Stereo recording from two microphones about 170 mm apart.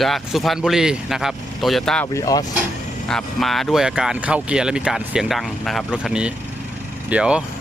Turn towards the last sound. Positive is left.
turn(degrees=-5)  # may be behind; listen again after turning